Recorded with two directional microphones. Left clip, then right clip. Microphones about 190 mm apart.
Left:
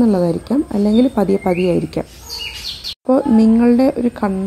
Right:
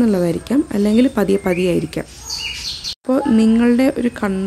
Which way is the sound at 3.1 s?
5° right (ahead or behind).